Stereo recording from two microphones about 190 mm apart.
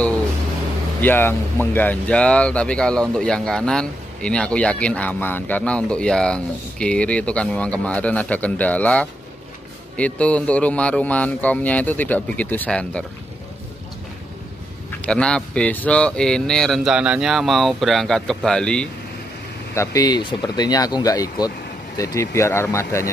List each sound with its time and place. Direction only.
1.0 s speech: 10° left (ahead or behind)
14.9 s speech: 5° left (ahead or behind)
19.7 s speech: 15° left (ahead or behind)